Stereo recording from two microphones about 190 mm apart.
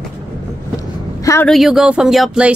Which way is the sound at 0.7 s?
15° left (ahead or behind).